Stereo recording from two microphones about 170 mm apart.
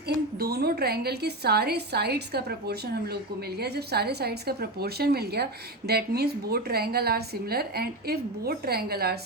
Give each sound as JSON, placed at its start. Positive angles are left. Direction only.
{"t": 0.3, "sound": "a woman's voice", "side_deg": -65}